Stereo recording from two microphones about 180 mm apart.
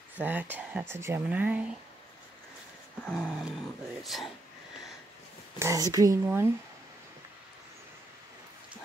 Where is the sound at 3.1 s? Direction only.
Centre (ahead or behind).